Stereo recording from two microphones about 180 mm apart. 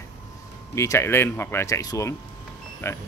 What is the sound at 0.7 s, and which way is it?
A man's voice, 15° left (ahead or behind).